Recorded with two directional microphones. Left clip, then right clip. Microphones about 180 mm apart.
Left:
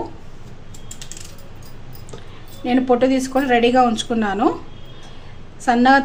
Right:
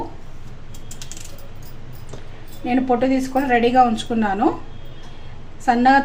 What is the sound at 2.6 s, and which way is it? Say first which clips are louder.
A woman's voice: left 2 dB; 25° left (ahead or behind).